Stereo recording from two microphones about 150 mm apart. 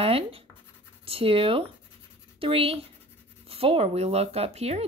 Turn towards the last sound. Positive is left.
turn(degrees=-45)  # may be behind; listen again after turning